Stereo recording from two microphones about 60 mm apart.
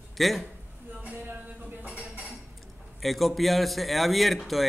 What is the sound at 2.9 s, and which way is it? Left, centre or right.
A man's voice, centre.